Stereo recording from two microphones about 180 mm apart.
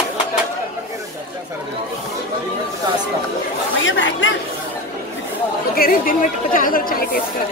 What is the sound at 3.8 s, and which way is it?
Chatter, 90° left.